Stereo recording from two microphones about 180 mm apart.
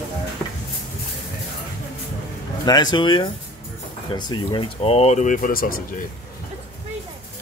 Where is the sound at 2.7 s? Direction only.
25° left (ahead or behind); by 5.8 s 50° left (ahead or behind).